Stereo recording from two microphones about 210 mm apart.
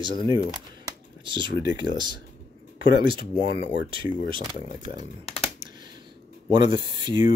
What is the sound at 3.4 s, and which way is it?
Speech, 55° left (ahead or behind).